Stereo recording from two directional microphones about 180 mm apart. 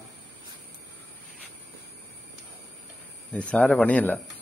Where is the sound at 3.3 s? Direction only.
5° left (ahead or behind).